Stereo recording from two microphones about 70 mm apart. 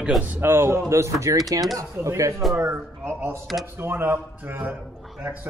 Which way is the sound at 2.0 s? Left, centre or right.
Right.